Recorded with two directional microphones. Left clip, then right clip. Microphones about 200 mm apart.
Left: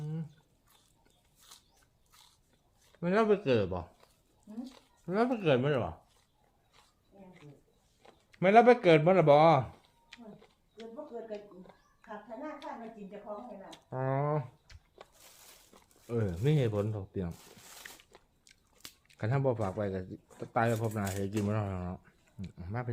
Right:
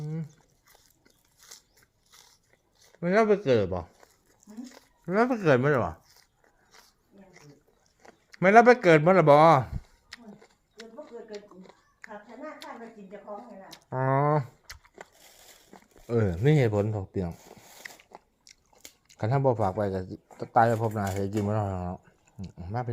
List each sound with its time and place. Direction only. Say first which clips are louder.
0.0 s biting: right 5 dB; 25° right (ahead or behind)
3.0 s speech: right 5 dB; 25° right (ahead or behind)
8.0 s speech: right 5 dB; 25° right (ahead or behind)
10.1 s a sound: right 4 dB; 25° right (ahead or behind)
13.7 s speech: right 8 dB; 25° right (ahead or behind)
14.7 s a sound: right 13 dB; 50° right (ahead or behind)
16.0 s speech: right 7 dB; 25° right (ahead or behind)
17.8 s biting: right 6 dB; 15° right (ahead or behind)
19.0 s speech: right 6 dB; 15° right (ahead or behind)